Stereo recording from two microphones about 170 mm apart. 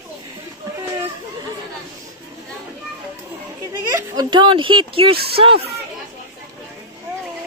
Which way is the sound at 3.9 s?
20° right (ahead or behind).